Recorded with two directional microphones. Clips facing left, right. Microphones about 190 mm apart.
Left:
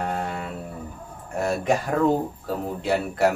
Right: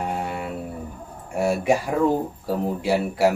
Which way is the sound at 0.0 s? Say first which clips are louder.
Right 1 dB; 10° right (ahead or behind).